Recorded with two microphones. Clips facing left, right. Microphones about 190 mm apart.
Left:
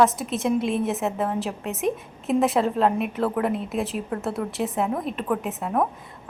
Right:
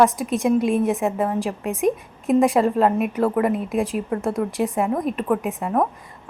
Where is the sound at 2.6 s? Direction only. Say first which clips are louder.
Right 3 dB; centre (ahead or behind).